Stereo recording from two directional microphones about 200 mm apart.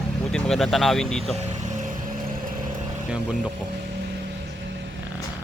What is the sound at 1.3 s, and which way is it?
Vehicle, 35° right (ahead or behind).